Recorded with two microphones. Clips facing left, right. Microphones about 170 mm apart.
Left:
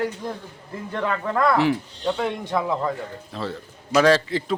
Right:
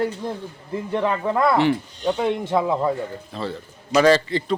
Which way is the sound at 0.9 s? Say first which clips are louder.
Right 3 dB; 15° right (ahead or behind).